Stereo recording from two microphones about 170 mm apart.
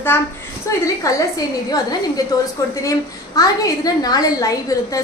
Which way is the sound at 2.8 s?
20° left (ahead or behind).